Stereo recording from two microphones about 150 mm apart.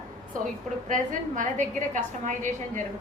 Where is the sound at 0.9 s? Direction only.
60° right (ahead or behind).